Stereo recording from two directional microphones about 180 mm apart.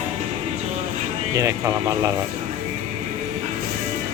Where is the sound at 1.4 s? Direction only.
15° right (ahead or behind).